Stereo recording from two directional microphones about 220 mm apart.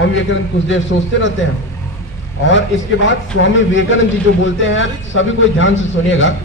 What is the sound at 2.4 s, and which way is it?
A man's voice, 55° left (ahead or behind).